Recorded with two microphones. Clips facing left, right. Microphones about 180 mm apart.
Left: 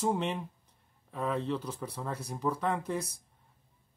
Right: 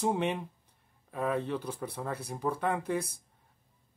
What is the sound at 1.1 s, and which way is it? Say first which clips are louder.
Speech: right 1 dB; 60° right (ahead or behind).